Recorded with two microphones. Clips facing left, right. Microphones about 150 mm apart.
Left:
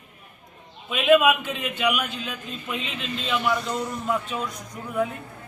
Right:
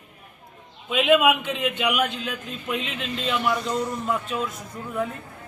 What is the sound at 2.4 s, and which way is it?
A man's voice, centre (ahead or behind).